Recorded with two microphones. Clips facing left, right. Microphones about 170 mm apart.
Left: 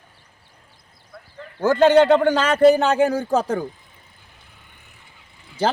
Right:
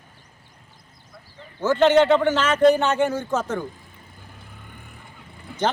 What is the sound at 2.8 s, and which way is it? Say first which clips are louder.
Speech: left 3 dB; 35° left (ahead or behind).